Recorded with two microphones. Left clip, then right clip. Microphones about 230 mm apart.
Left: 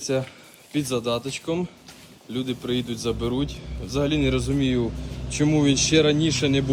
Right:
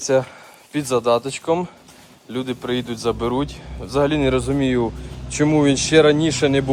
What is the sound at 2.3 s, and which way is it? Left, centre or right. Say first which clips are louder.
Speech: right 3 dB; right.